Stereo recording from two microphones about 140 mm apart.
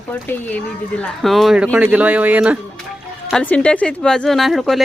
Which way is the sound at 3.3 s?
5° left (ahead or behind).